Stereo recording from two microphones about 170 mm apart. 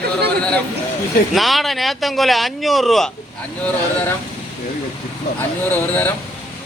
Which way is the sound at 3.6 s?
10° left (ahead or behind).